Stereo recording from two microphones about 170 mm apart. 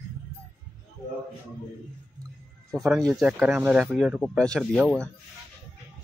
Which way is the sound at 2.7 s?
Centre (ahead or behind).